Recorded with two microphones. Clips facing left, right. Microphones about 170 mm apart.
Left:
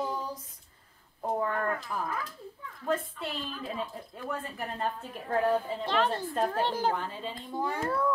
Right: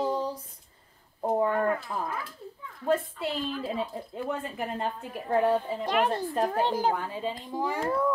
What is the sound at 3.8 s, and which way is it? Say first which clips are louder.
A woman's voice: right 5 dB; 20° right (ahead or behind).